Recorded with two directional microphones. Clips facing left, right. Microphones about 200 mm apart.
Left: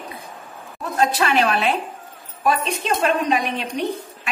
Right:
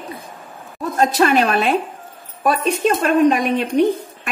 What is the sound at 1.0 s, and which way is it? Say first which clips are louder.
A woman's voice: right 3 dB; 45° right (ahead or behind).